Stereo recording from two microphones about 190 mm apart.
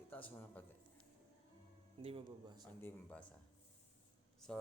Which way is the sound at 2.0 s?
30° right (ahead or behind).